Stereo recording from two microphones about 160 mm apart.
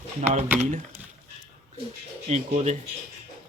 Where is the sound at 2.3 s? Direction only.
45° right (ahead or behind).